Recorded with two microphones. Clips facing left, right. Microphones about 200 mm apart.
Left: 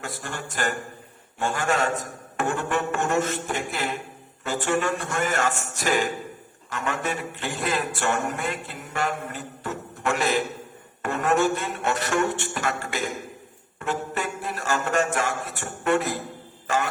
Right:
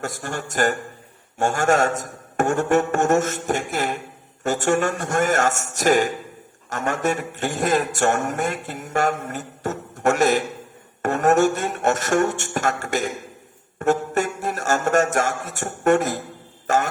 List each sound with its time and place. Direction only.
0.0 s a man's voice: 45° right (ahead or behind)